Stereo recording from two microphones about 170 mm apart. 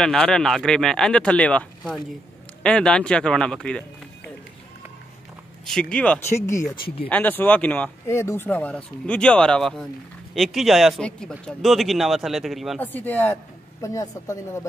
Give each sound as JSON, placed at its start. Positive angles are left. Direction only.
{"t": 0.0, "sound": "a man's voice", "side_deg": 5}
{"t": 5.7, "sound": "a man's voice", "side_deg": 5}
{"t": 12.8, "sound": "speech", "side_deg": 10}